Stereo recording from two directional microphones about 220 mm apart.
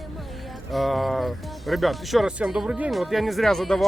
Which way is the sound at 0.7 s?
Centre (ahead or behind).